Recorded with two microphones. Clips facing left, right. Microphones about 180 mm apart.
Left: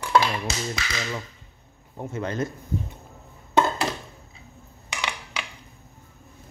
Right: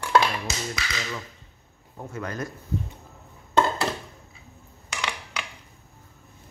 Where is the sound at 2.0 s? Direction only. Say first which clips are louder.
Left 4 dB; 25° left (ahead or behind).